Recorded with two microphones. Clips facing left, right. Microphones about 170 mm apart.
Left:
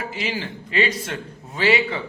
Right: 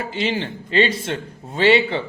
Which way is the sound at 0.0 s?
30° right (ahead or behind).